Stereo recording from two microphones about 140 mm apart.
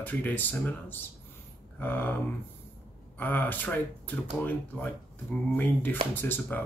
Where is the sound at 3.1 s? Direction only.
15° left (ahead or behind).